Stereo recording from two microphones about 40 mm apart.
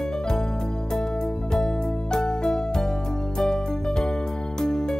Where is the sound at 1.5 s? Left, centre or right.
Centre.